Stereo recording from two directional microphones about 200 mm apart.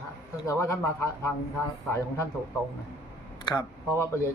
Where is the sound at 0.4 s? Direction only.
15° left (ahead or behind).